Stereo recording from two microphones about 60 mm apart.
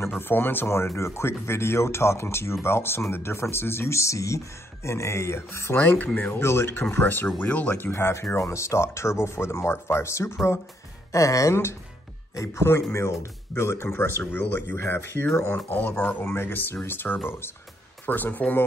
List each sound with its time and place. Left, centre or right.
0.2 s speech: left
7.8 s speech: left
11.1 s speech: left
12.4 s speech: left